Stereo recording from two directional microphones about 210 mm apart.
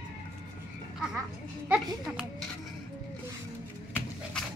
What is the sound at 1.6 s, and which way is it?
Speech, 5° right (ahead or behind).